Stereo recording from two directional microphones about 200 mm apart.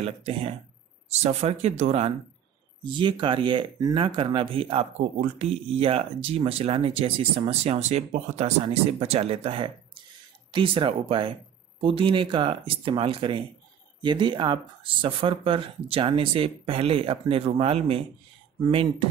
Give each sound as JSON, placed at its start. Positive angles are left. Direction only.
{"t": 0.0, "sound": "speech", "side_deg": -30}